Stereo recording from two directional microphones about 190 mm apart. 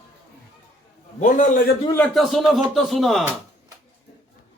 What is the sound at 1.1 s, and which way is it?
Speech, 40° left (ahead or behind).